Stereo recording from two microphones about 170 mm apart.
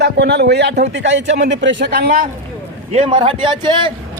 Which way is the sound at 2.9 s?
35° right (ahead or behind).